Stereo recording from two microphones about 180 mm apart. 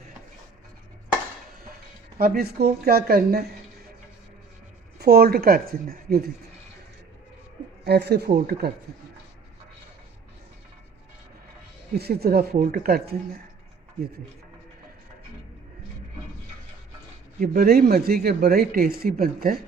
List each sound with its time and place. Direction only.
2.1 s speech: 55° right (ahead or behind)
4.9 s speech: 60° right (ahead or behind)
7.9 s speech: 65° right (ahead or behind)
11.9 s speech: 60° right (ahead or behind)
17.4 s speech: 55° right (ahead or behind)